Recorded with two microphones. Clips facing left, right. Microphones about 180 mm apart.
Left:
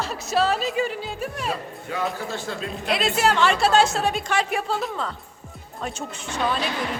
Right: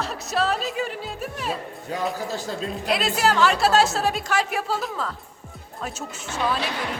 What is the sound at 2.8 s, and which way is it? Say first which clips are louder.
A woman's voice: left 1 dB; centre (ahead or behind).